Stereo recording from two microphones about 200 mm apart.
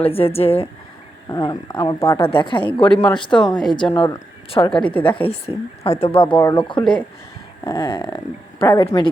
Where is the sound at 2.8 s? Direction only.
5° left (ahead or behind).